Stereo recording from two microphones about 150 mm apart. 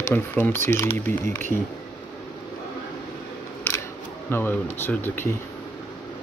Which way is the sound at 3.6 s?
15° left (ahead or behind).